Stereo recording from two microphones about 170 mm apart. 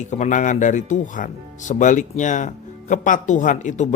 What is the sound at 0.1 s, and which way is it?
Speech, 45° left (ahead or behind).